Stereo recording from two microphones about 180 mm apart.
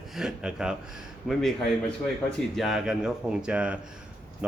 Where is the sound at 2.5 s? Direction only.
Centre (ahead or behind).